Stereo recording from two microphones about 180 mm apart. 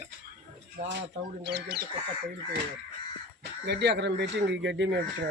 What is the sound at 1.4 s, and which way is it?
Speech, 65° right (ahead or behind).